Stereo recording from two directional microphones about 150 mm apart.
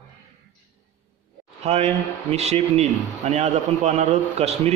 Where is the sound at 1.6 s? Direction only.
45° right (ahead or behind).